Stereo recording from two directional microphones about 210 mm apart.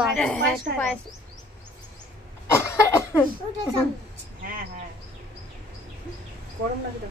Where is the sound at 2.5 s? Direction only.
15° left (ahead or behind).